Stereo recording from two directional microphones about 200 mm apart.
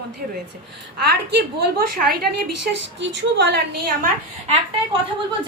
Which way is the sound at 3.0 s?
60° right (ahead or behind).